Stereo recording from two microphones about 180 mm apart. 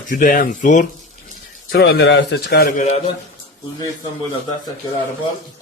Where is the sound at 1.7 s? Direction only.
70° left (ahead or behind).